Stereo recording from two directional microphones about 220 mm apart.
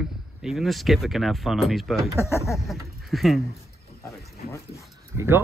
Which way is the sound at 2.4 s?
15° left (ahead or behind).